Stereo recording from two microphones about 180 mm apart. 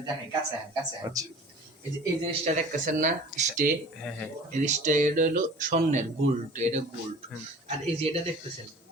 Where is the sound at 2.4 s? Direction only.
45° right (ahead or behind).